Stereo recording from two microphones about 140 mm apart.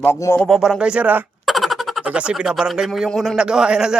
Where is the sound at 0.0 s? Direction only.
20° left (ahead or behind).